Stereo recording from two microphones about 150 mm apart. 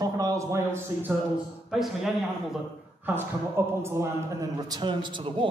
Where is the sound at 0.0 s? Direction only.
25° right (ahead or behind).